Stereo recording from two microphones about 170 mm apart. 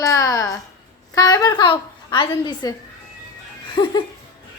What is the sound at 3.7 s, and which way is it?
Speech, 25° left (ahead or behind).